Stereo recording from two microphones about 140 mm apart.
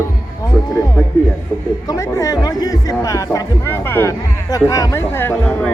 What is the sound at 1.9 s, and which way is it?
Speech, 25° left (ahead or behind).